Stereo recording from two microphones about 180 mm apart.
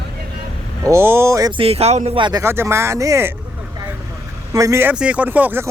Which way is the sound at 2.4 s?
15° right (ahead or behind).